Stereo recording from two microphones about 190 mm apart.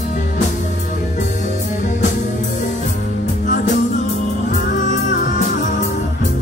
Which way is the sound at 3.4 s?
40° left (ahead or behind).